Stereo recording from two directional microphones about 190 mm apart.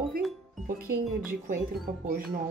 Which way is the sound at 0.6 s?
45° right (ahead or behind).